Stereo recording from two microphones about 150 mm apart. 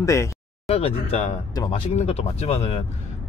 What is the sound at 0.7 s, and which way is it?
Speech, 40° left (ahead or behind).